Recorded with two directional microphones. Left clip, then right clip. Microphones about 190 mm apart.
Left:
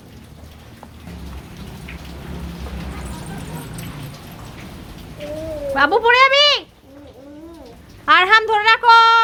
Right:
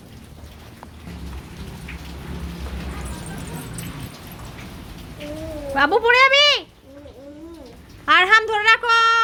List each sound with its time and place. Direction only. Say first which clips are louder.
5.7 s speech: left 2 dB; 20° right (ahead or behind)
8.0 s a woman's voice: left 2 dB; 10° right (ahead or behind)